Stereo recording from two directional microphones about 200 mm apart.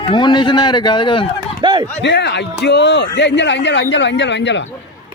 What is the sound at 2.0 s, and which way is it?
Speech, 60° left (ahead or behind).